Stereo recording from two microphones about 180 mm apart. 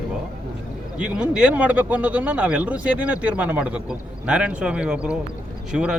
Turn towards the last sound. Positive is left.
turn(degrees=-5)  # may be behind; listen again after turning